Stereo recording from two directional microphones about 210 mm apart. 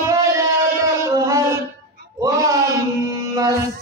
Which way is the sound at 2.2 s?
15° right (ahead or behind).